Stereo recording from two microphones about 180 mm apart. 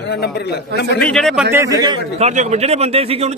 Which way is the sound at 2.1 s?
40° right (ahead or behind).